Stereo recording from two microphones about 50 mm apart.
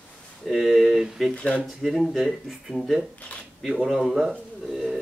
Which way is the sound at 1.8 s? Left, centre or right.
Centre.